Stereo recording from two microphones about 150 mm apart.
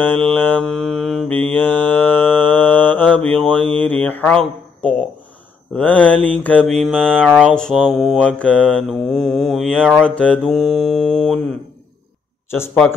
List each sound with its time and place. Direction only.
0.0 s mantra: 10° left (ahead or behind)
5.8 s mantra: 10° left (ahead or behind)
12.4 s speech: 15° left (ahead or behind)